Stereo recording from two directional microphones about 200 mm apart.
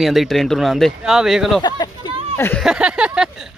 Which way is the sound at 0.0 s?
Centre (ahead or behind).